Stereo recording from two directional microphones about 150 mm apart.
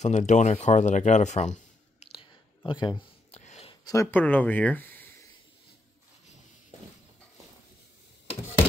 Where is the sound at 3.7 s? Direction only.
20° left (ahead or behind).